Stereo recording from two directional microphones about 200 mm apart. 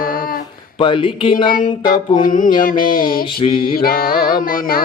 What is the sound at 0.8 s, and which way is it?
Speech, 25° left (ahead or behind).